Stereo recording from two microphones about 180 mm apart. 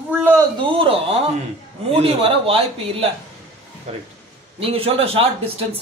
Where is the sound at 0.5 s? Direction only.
30° right (ahead or behind).